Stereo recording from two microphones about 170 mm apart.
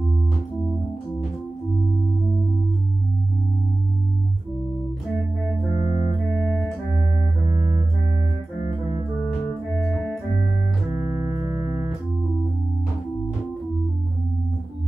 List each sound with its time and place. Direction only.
5.9 s music: 35° left (ahead or behind)
6.4 s organ: 5° left (ahead or behind)
11.2 s music: 15° right (ahead or behind)